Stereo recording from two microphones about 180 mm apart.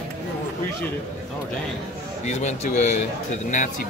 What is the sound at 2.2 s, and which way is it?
Speech, 40° left (ahead or behind).